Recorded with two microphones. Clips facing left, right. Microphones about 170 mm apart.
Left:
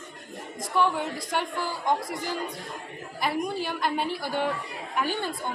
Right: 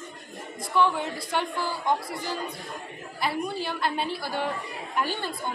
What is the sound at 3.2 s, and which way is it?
Speech, 15° left (ahead or behind).